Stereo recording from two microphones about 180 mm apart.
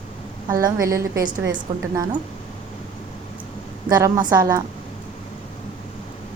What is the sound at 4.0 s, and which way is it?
Speech, 20° right (ahead or behind).